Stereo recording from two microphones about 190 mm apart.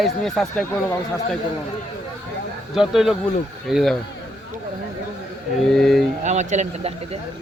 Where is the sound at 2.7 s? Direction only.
Centre (ahead or behind).